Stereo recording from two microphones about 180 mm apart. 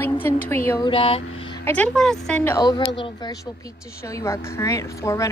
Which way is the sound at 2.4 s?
20° left (ahead or behind).